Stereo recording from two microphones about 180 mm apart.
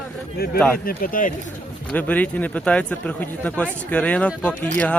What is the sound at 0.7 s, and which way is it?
Speech, 55° left (ahead or behind).